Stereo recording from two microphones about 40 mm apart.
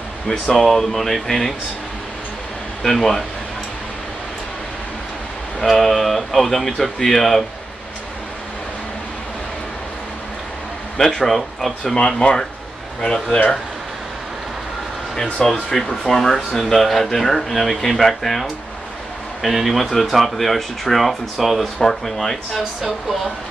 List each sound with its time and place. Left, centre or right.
0.5 s speech: centre
2.8 s speech: centre
5.7 s speech: centre
11.1 s speech: centre
12.2 s speech: left
13.0 s speech: centre
15.4 s speech: centre